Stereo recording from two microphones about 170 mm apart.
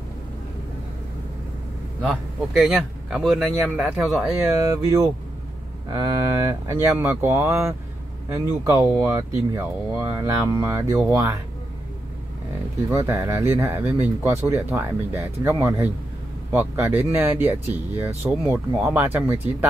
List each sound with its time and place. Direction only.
2.0 s speech: centre (ahead or behind)
4.4 s speech: 15° right (ahead or behind)
12.9 s speech: 15° right (ahead or behind)